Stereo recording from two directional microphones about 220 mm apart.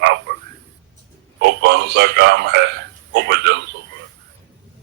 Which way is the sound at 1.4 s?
50° right (ahead or behind).